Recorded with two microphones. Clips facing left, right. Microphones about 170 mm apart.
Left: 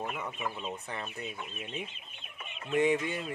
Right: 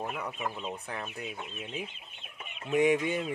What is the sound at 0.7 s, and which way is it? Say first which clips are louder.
Speech: right 1 dB; centre (ahead or behind).